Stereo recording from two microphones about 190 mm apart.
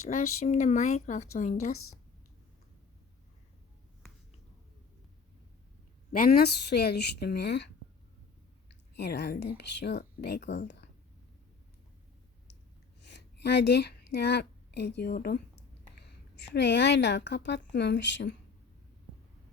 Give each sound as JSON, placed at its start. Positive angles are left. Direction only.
{"t": 0.1, "sound": "speech", "side_deg": 35}
{"t": 6.1, "sound": "speech", "side_deg": 55}
{"t": 9.0, "sound": "speech", "side_deg": 60}
{"t": 13.1, "sound": "a woman's voice", "side_deg": 60}